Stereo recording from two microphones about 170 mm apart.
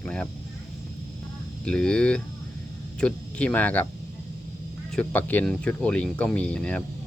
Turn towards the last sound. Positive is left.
turn(degrees=5)  # may be behind; listen again after turning